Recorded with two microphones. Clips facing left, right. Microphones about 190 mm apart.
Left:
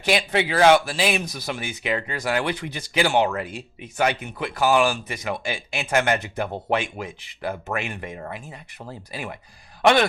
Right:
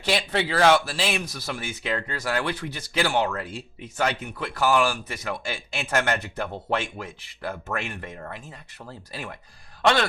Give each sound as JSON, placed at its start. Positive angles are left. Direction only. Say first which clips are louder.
{"t": 0.0, "sound": "speech", "louder": "left 3 dB", "side_deg": 15}